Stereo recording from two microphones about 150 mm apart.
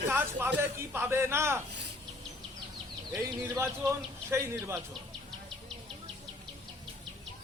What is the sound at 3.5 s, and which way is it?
A man's voice, 15° right (ahead or behind).